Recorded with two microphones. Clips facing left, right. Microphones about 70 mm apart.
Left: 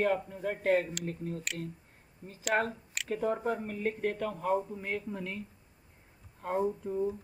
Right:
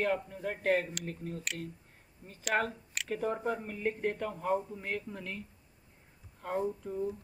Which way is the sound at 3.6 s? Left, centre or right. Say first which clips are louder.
Left 1 dB; centre.